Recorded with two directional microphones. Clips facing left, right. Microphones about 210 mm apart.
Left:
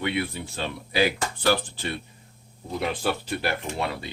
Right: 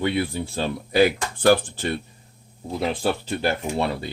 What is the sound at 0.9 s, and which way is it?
Speech, 50° right (ahead or behind).